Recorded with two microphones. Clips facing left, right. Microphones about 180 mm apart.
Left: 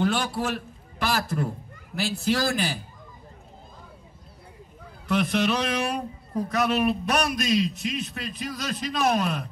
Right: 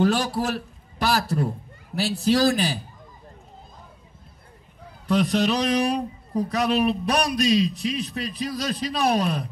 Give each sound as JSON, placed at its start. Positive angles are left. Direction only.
{"t": 0.0, "sound": "a man's voice", "side_deg": -40}
{"t": 5.0, "sound": "a man's voice", "side_deg": -35}